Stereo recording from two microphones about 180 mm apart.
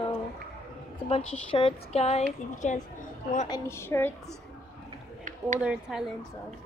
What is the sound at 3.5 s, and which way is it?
Speech, 15° left (ahead or behind).